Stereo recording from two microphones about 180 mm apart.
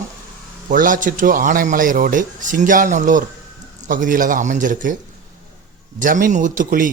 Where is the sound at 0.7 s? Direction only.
45° right (ahead or behind).